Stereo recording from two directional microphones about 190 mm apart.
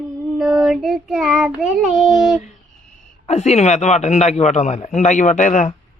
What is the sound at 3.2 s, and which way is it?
Speech, 35° left (ahead or behind).